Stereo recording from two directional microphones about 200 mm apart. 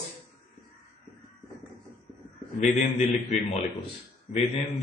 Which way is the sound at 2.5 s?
35° left (ahead or behind).